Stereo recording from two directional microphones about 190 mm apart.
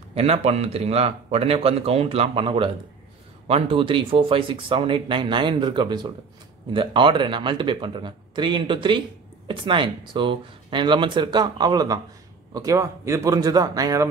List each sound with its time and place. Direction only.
0.1 s speech: 30° right (ahead or behind)